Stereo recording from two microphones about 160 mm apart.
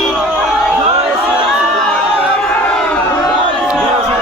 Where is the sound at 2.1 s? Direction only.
5° right (ahead or behind).